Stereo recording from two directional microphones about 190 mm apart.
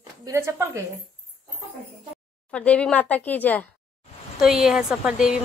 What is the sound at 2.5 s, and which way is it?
Speech, 5° left (ahead or behind).